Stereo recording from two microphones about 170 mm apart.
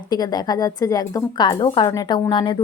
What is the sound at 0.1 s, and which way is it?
A woman's voice, 25° left (ahead or behind).